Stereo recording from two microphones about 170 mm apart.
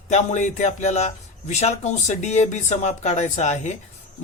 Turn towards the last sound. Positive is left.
turn(degrees=45)  # may be behind; listen again after turning